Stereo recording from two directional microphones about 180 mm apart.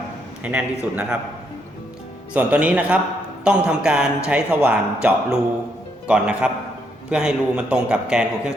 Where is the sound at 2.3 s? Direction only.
5° right (ahead or behind).